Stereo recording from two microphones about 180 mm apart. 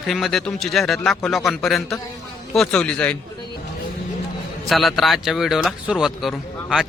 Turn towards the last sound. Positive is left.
turn(degrees=0)  # may be behind; listen again after turning